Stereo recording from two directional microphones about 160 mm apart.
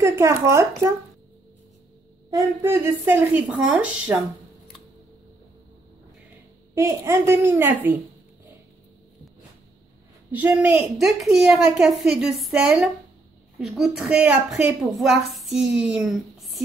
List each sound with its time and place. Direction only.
0.0 s a woman's voice: 15° right (ahead or behind)
2.3 s a woman's voice: 15° right (ahead or behind)
6.7 s a woman's voice: 20° right (ahead or behind)
10.3 s a woman's voice: 10° right (ahead or behind)